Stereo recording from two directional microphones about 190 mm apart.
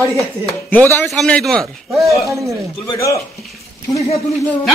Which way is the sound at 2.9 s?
15° left (ahead or behind).